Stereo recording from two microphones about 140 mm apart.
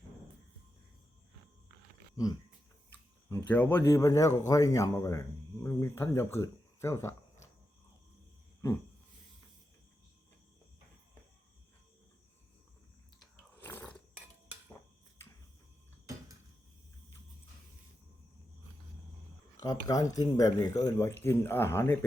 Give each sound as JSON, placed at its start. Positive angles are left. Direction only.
{"t": 2.1, "sound": "speech", "side_deg": 25}
{"t": 3.2, "sound": "speech", "side_deg": 15}
{"t": 13.6, "sound": "roar", "side_deg": 15}
{"t": 19.5, "sound": "speech", "side_deg": 25}